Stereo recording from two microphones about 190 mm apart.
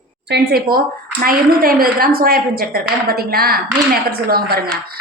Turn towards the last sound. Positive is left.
turn(degrees=-55)  # may be behind; listen again after turning